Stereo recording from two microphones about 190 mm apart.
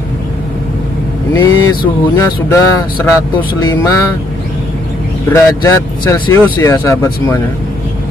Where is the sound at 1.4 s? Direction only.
20° left (ahead or behind).